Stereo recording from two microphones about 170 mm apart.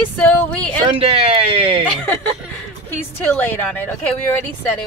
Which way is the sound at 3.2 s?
10° left (ahead or behind).